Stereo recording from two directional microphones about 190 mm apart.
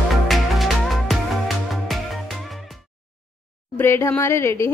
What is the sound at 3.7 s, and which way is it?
Speech, 15° left (ahead or behind).